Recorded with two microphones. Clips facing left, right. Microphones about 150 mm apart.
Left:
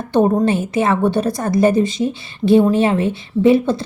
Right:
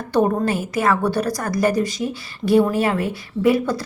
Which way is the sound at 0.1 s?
20° left (ahead or behind).